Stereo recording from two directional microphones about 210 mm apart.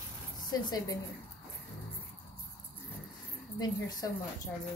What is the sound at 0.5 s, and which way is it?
Speech, 20° left (ahead or behind).